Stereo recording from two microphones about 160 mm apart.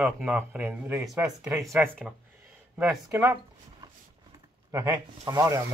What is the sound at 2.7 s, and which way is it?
Speech, 15° right (ahead or behind).